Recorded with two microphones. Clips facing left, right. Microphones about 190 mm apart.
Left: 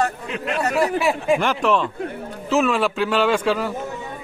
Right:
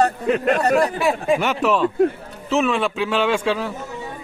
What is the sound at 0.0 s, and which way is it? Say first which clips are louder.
Speech: right 6 dB; 45° right (ahead or behind).